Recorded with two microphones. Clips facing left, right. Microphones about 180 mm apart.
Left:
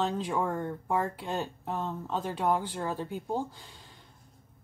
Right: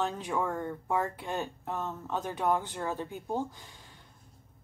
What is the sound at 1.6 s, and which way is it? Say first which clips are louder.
Speech: left 2 dB; 15° left (ahead or behind).